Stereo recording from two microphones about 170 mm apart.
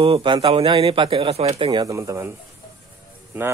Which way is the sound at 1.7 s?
20° right (ahead or behind).